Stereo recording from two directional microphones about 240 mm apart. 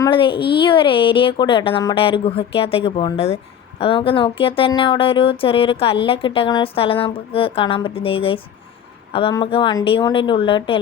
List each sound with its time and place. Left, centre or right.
0.0 s speech: left